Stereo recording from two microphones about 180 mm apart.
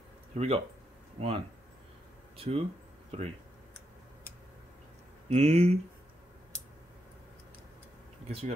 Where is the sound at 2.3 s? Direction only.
35° right (ahead or behind).